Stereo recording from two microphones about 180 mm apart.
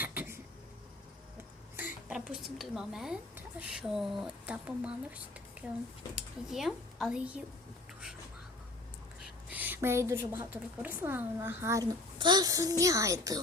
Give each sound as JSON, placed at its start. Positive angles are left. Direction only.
{"t": 0.0, "sound": "a sound", "side_deg": -10}
{"t": 1.7, "sound": "a woman's voice", "side_deg": -5}
{"t": 9.5, "sound": "a woman's voice", "side_deg": -10}